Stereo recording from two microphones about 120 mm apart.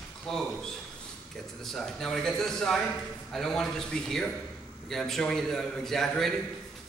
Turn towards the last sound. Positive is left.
turn(degrees=5)  # may be behind; listen again after turning